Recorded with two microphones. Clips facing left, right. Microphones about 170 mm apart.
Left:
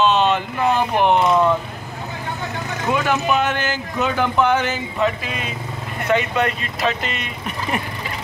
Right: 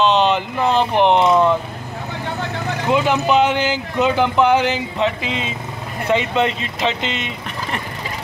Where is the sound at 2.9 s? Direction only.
20° right (ahead or behind).